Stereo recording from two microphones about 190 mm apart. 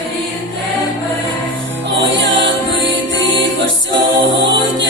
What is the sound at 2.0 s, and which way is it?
Music, 75° right (ahead or behind).